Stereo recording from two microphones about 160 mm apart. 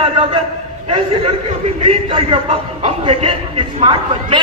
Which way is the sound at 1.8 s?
30° right (ahead or behind).